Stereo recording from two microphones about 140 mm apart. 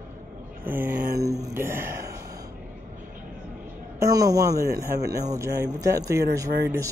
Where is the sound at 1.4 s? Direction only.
15° right (ahead or behind).